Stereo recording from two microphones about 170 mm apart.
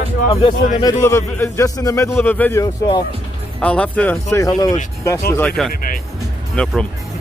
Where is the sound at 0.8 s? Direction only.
20° left (ahead or behind).